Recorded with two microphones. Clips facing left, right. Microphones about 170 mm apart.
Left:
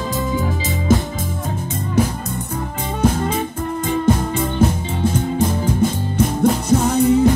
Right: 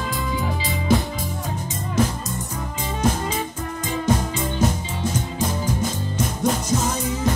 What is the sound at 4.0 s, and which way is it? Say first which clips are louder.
Music: left 3 dB; 55° left (ahead or behind).